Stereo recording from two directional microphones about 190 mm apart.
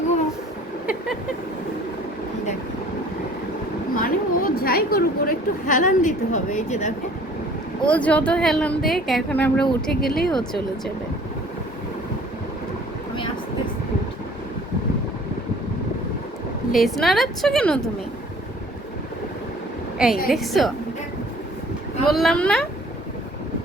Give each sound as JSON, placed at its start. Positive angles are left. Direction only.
{"t": 3.9, "sound": "a woman's voice", "side_deg": 50}
{"t": 7.9, "sound": "a woman's voice", "side_deg": 5}
{"t": 16.7, "sound": "a woman's voice", "side_deg": 0}
{"t": 20.0, "sound": "a woman's voice", "side_deg": -5}
{"t": 22.0, "sound": "a woman's voice", "side_deg": 0}